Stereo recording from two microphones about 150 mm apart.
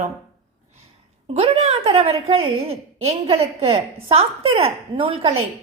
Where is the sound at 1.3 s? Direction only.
45° right (ahead or behind).